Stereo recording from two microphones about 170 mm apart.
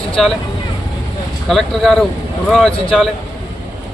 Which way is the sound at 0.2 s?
Centre (ahead or behind).